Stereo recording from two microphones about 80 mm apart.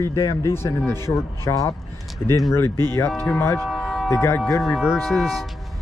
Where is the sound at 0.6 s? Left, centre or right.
Left.